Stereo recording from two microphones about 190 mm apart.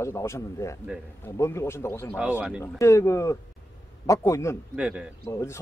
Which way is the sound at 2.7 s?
15° left (ahead or behind).